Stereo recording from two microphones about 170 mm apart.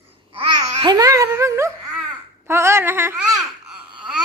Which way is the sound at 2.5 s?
15° right (ahead or behind).